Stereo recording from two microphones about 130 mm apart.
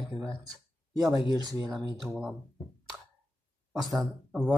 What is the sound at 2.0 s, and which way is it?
Speech, 5° right (ahead or behind).